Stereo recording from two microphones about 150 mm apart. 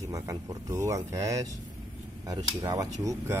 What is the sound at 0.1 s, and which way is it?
Speech, 20° right (ahead or behind).